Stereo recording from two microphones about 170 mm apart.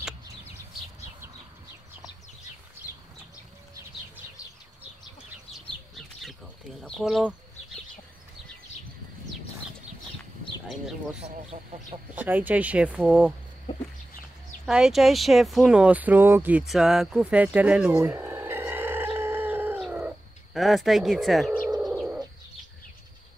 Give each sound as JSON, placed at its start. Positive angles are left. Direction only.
{"t": 6.8, "sound": "speech", "side_deg": 0}
{"t": 11.5, "sound": "chicken", "side_deg": -50}
{"t": 12.2, "sound": "speech", "side_deg": -10}
{"t": 14.7, "sound": "speech", "side_deg": -5}
{"t": 21.7, "sound": "bird", "side_deg": 0}